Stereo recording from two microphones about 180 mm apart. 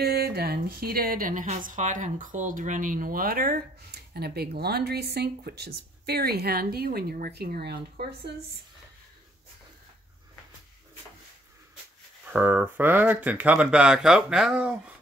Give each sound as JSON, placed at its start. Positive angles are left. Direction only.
{"t": 0.0, "sound": "speech", "side_deg": -60}
{"t": 12.3, "sound": "speech", "side_deg": -10}